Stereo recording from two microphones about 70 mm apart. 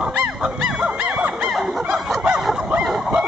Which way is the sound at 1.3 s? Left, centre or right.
Centre.